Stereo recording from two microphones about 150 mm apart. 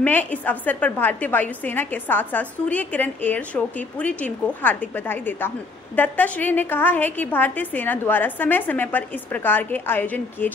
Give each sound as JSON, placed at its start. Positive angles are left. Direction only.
{"t": 0.0, "sound": "a woman's voice", "side_deg": 10}